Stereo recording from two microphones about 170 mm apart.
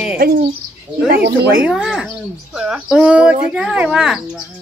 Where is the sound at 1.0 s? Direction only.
70° right (ahead or behind).